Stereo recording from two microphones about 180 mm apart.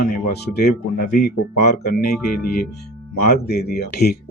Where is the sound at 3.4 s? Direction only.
60° left (ahead or behind).